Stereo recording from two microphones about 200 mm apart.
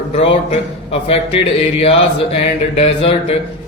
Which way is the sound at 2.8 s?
30° left (ahead or behind).